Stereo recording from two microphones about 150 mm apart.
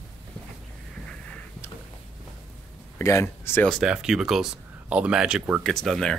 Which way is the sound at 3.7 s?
5° right (ahead or behind).